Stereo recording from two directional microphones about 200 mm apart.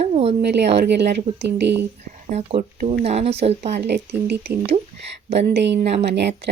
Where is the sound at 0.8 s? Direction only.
55° right (ahead or behind).